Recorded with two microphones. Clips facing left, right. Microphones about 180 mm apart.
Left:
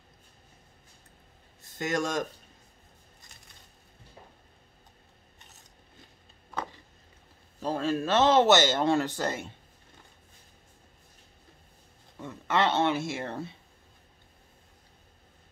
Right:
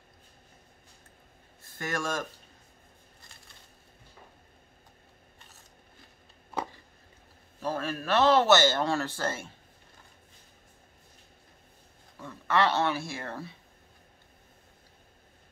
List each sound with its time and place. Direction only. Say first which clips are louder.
1.8 s speech: left 3 dB; 20° left (ahead or behind)
7.6 s speech: left 4 dB; 20° left (ahead or behind)
12.2 s speech: even; 20° left (ahead or behind)